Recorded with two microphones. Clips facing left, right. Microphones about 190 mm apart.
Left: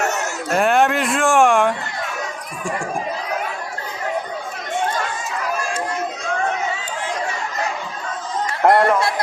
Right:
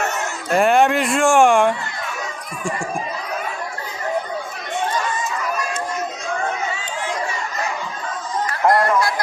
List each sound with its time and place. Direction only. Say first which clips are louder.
0.5 s speech: right 2 dB; centre (ahead or behind)
8.6 s chatter: left 3 dB; 60° left (ahead or behind)
9.0 s music: even; 25° left (ahead or behind)